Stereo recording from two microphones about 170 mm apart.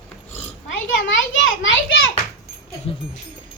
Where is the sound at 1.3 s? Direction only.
90° left.